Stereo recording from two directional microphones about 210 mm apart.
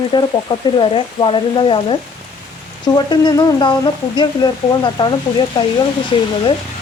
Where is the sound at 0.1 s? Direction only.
20° left (ahead or behind).